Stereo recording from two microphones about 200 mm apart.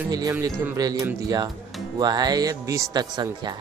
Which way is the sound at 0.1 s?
20° right (ahead or behind).